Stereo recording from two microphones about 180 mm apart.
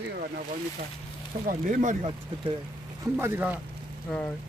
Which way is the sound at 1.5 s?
45° right (ahead or behind).